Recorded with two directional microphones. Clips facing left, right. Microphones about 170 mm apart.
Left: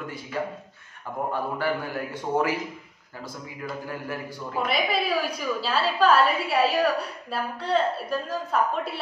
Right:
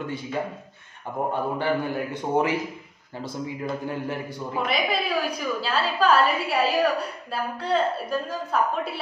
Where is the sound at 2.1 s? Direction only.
20° right (ahead or behind).